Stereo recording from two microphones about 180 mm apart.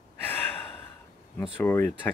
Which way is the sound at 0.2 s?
10° left (ahead or behind).